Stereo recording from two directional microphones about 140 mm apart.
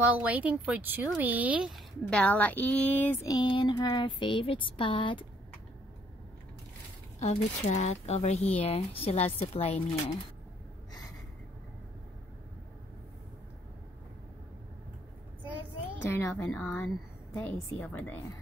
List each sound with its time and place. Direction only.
0.0 s speech: 10° right (ahead or behind)
2.0 s a woman's voice: 10° left (ahead or behind)
3.3 s a sound: 30° left (ahead or behind)
7.2 s speech: 50° left (ahead or behind)
16.0 s a woman's voice: 15° left (ahead or behind)